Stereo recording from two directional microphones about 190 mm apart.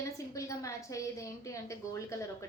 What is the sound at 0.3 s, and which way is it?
A woman's voice, 15° left (ahead or behind).